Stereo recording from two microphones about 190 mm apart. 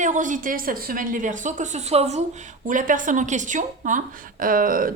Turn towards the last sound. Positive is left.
turn(degrees=-45)  # may be behind; listen again after turning